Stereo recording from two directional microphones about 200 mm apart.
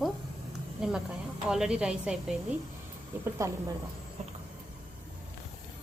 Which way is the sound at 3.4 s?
15° right (ahead or behind).